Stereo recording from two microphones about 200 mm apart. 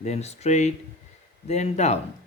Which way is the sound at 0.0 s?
35° left (ahead or behind).